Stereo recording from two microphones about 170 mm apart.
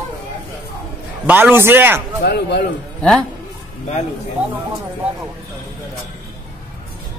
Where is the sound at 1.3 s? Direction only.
10° right (ahead or behind).